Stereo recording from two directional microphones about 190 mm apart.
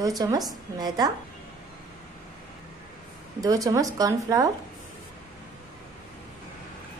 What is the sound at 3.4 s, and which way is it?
A woman's voice, 20° right (ahead or behind).